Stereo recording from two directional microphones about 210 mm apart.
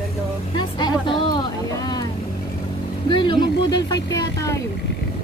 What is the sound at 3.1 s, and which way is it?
Speech, 20° left (ahead or behind).